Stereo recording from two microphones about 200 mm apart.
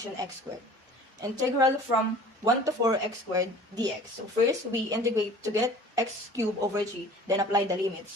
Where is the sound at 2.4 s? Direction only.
15° right (ahead or behind).